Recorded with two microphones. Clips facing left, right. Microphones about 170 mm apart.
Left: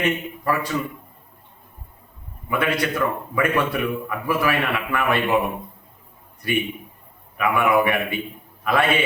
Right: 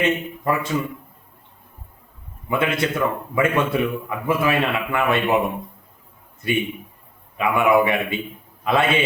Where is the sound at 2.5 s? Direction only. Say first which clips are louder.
Right 1 dB; 25° right (ahead or behind).